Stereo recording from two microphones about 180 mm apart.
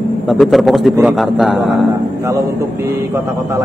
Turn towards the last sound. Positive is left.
turn(degrees=-15)  # may be behind; listen again after turning